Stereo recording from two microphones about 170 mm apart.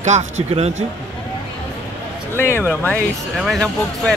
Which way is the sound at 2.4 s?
15° left (ahead or behind).